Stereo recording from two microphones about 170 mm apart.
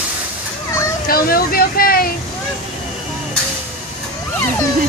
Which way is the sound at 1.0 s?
60° left (ahead or behind).